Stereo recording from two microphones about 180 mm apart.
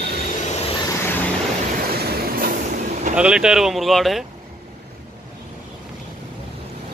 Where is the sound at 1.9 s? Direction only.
55° right (ahead or behind).